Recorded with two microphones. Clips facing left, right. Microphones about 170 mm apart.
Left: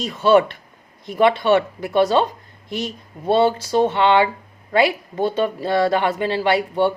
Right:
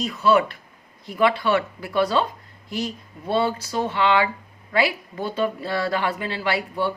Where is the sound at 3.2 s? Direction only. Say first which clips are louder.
Left 6 dB; 25° left (ahead or behind).